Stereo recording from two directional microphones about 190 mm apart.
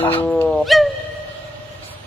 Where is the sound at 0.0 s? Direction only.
10° left (ahead or behind).